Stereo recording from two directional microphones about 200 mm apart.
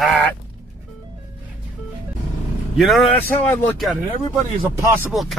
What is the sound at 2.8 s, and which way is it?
Speech, 5° left (ahead or behind).